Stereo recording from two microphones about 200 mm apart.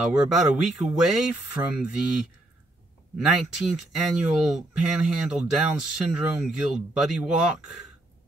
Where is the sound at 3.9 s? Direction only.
Centre (ahead or behind).